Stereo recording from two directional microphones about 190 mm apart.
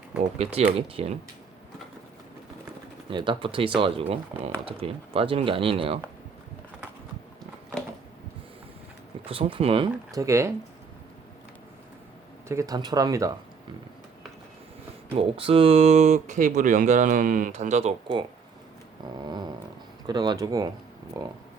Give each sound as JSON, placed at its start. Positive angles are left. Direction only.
{"t": 0.4, "sound": "speech", "side_deg": -30}
{"t": 3.1, "sound": "speech", "side_deg": -25}
{"t": 9.2, "sound": "speech", "side_deg": -30}
{"t": 12.5, "sound": "speech", "side_deg": -15}
{"t": 15.1, "sound": "speech", "side_deg": -30}
{"t": 19.2, "sound": "dog", "side_deg": -20}
{"t": 20.1, "sound": "speech", "side_deg": -20}